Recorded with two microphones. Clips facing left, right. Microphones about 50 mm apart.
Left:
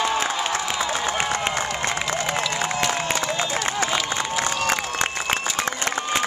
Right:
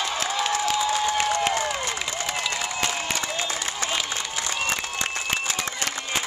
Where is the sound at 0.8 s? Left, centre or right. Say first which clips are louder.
Right 1 dB; left.